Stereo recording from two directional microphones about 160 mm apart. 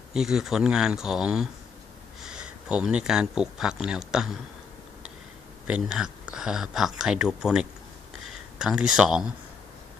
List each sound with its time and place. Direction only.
0.1 s speech: 5° right (ahead or behind)
5.6 s speech: 5° right (ahead or behind)